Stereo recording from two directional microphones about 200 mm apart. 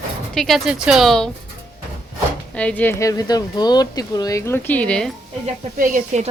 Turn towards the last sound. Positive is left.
turn(degrees=-40)  # may be behind; listen again after turning